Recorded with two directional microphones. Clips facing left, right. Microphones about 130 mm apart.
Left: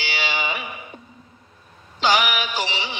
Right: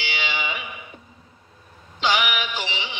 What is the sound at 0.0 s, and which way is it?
Music, 40° left (ahead or behind).